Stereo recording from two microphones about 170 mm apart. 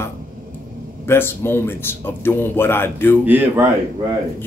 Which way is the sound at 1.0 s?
15° left (ahead or behind).